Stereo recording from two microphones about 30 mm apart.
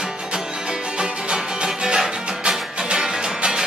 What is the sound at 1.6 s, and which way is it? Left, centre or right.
Music, right.